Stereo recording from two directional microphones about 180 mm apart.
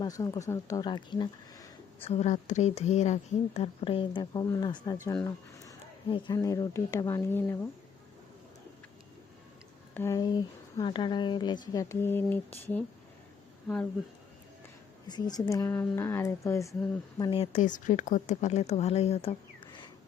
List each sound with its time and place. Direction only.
0.0 s speech: 20° left (ahead or behind)
9.9 s speech: 15° left (ahead or behind)
15.0 s speech: 20° left (ahead or behind)
17.2 s speech: 25° left (ahead or behind)